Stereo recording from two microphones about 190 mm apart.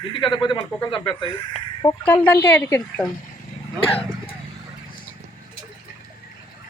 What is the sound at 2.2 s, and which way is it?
Speech, 10° left (ahead or behind).